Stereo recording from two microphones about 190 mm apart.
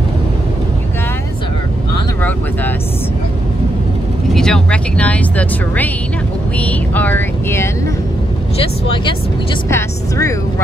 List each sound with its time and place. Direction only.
4.3 s speech: 5° left (ahead or behind)
8.5 s speech: 25° left (ahead or behind)
9.7 s speech: 15° left (ahead or behind)